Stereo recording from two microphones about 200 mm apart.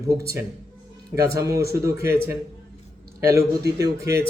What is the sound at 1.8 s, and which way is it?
Speech, 15° right (ahead or behind).